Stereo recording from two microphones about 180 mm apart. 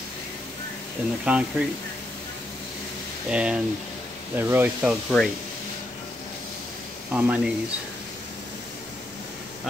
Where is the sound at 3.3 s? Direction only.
5° right (ahead or behind).